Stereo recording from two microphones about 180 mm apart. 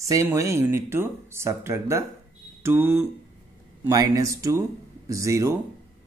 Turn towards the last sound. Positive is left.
turn(degrees=-15)  # may be behind; listen again after turning